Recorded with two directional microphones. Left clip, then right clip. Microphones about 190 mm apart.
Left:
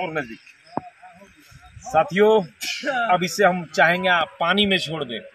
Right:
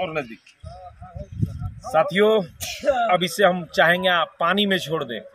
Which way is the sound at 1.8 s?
20° right (ahead or behind).